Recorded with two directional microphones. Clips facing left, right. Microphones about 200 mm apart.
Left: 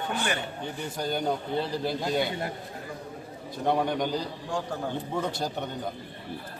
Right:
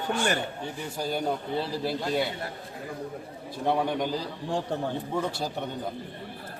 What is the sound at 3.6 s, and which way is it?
A man's voice, centre (ahead or behind).